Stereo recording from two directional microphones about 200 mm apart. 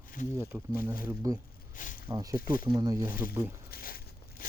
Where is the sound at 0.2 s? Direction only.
40° left (ahead or behind).